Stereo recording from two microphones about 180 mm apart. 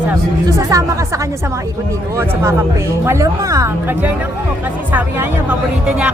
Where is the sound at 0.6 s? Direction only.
15° right (ahead or behind).